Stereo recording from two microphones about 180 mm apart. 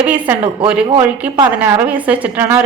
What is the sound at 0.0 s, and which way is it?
A woman's voice, 10° right (ahead or behind).